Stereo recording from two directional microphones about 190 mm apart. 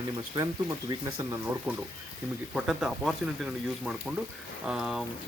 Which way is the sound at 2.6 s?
5° right (ahead or behind).